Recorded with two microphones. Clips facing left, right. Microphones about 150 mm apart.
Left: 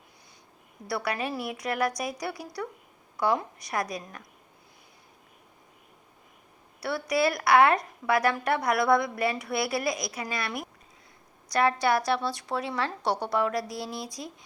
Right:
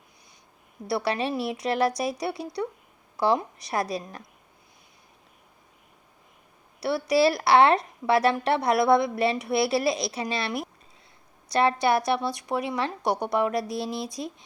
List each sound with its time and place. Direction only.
0.9 s a woman's voice: 25° right (ahead or behind)
6.7 s a woman's voice: 25° right (ahead or behind)